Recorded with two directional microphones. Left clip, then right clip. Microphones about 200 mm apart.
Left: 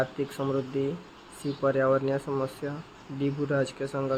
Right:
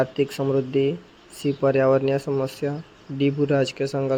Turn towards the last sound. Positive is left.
turn(degrees=-25)  # may be behind; listen again after turning